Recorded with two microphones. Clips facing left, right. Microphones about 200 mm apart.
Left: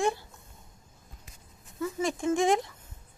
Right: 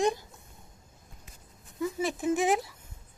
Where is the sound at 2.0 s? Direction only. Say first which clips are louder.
Left 2 dB; 5° right (ahead or behind).